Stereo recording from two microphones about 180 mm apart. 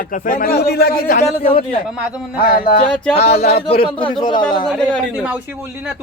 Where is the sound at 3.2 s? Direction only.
35° left (ahead or behind).